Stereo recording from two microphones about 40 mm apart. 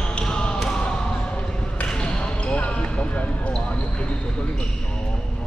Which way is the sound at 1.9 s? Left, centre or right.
Left.